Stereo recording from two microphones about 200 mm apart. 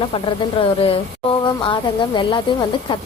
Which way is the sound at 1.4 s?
25° left (ahead or behind).